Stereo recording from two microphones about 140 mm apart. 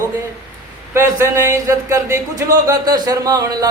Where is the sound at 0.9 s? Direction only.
20° right (ahead or behind).